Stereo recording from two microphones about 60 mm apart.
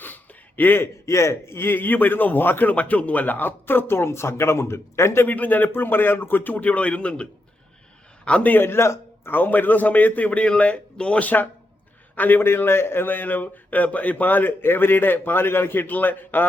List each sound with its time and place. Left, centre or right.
0.0 s a sound: left
1.0 s a man's voice: left
5.3 s a man's voice: left
8.5 s a man's voice: left
9.3 s a man's voice: left